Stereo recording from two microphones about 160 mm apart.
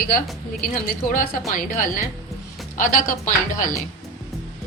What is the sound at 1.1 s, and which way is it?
A woman's voice, 55° left (ahead or behind).